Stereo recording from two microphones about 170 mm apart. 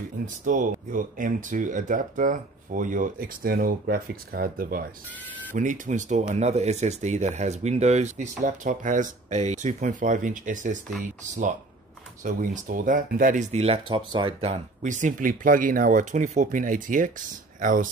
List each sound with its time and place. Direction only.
0.5 s speech: 50° right (ahead or behind)
12.2 s speech: 50° right (ahead or behind)